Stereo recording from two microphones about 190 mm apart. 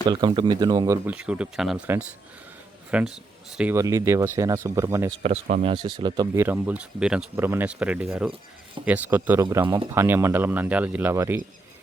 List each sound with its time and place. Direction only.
0.1 s speech: 25° right (ahead or behind)
1.0 s speech: 5° right (ahead or behind)
2.9 s speech: 5° right (ahead or behind)
5.2 s speech: 35° right (ahead or behind)
5.7 s speech: 25° right (ahead or behind)